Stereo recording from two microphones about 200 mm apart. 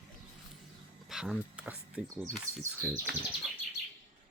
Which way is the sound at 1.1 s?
Centre (ahead or behind).